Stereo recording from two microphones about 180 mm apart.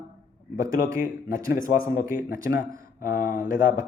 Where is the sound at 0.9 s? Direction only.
50° left (ahead or behind).